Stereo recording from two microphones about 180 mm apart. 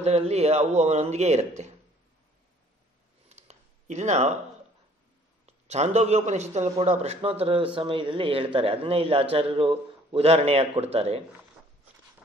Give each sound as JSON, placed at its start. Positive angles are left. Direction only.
{"t": 0.0, "sound": "a man's voice", "side_deg": -35}
{"t": 3.3, "sound": "a sound", "side_deg": -40}
{"t": 5.7, "sound": "a man's voice", "side_deg": -40}